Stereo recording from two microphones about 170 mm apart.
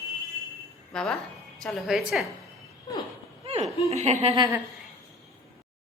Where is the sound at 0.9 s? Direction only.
5° left (ahead or behind).